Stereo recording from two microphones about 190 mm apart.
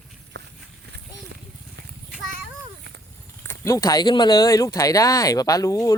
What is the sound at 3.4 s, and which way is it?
Speech, 15° left (ahead or behind).